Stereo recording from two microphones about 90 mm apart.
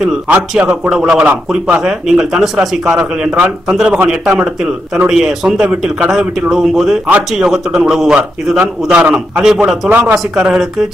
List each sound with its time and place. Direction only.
0.3 s a man's voice: 10° right (ahead or behind)
1.2 s a man's voice: 15° right (ahead or behind)
1.8 s a man's voice: 5° right (ahead or behind)
9.8 s a man's voice: 15° right (ahead or behind)